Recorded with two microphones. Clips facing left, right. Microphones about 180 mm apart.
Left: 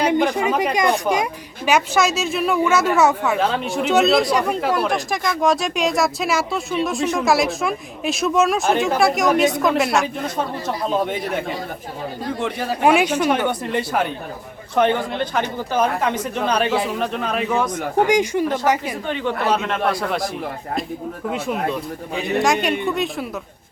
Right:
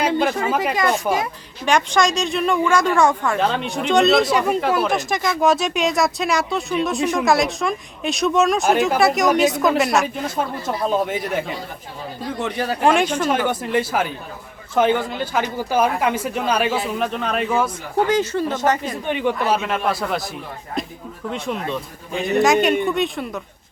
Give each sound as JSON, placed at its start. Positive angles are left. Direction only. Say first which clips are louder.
{"t": 0.1, "sound": "speech", "louder": "left 1 dB", "side_deg": 15}
{"t": 13.3, "sound": "speech", "louder": "right 1 dB", "side_deg": -5}
{"t": 18.0, "sound": "speech", "louder": "left 1 dB", "side_deg": 15}
{"t": 19.0, "sound": "speech", "louder": "right 2 dB", "side_deg": -15}
{"t": 21.3, "sound": "speech", "louder": "left 1 dB", "side_deg": 5}